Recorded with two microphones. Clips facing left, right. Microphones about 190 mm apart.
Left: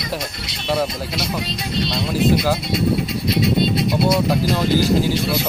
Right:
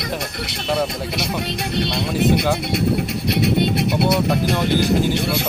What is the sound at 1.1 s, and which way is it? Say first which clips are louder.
Speech: right 1 dB; 60° right (ahead or behind).